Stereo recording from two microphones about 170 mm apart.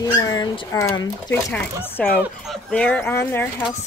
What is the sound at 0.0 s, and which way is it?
Speech, 20° left (ahead or behind).